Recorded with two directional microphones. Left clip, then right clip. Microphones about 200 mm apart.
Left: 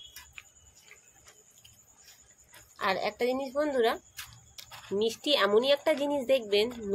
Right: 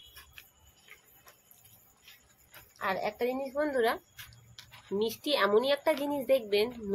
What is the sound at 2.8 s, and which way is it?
A woman's voice, 30° left (ahead or behind).